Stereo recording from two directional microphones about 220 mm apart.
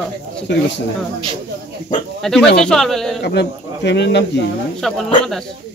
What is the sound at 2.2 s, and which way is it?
Speech, centre (ahead or behind).